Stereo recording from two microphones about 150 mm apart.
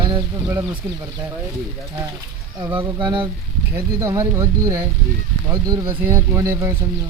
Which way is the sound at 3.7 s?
20° right (ahead or behind).